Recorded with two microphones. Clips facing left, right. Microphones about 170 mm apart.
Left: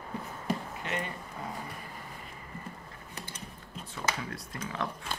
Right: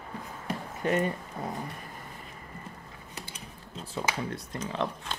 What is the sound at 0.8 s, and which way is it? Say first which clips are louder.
Speech: right 12 dB; 40° right (ahead or behind).